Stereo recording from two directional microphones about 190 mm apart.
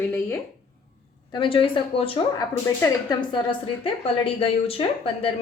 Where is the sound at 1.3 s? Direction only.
25° left (ahead or behind).